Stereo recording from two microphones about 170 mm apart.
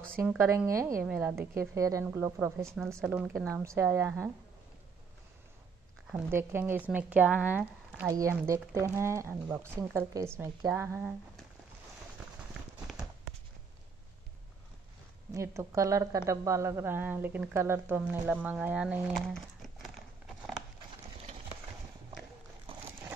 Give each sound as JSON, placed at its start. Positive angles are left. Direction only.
{"t": 0.4, "sound": "speech", "side_deg": -15}
{"t": 1.0, "sound": "a woman's voice", "side_deg": -5}
{"t": 1.5, "sound": "speech", "side_deg": -15}
{"t": 6.3, "sound": "speech", "side_deg": -15}
{"t": 12.9, "sound": "a sound", "side_deg": 0}
{"t": 15.3, "sound": "speech", "side_deg": -15}
{"t": 19.2, "sound": "a sound", "side_deg": 0}